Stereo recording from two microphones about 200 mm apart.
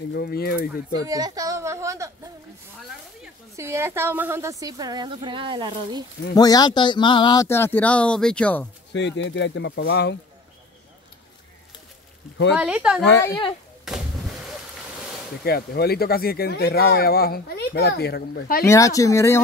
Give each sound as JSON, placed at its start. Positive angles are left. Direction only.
{"t": 0.1, "sound": "speech", "side_deg": 50}
{"t": 1.0, "sound": "speech", "side_deg": -20}
{"t": 3.5, "sound": "a woman's voice", "side_deg": -15}
{"t": 6.3, "sound": "speech", "side_deg": 20}
{"t": 8.9, "sound": "speech", "side_deg": 65}
{"t": 12.5, "sound": "speech", "side_deg": -5}
{"t": 13.8, "sound": "artillery fire", "side_deg": 0}
{"t": 15.4, "sound": "speech", "side_deg": 50}
{"t": 18.7, "sound": "speech", "side_deg": 15}